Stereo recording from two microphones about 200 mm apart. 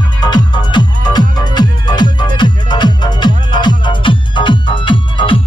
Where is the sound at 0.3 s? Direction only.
20° left (ahead or behind).